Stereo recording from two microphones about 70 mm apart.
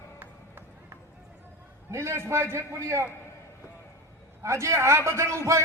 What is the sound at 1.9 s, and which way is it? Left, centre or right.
A man's voice, right.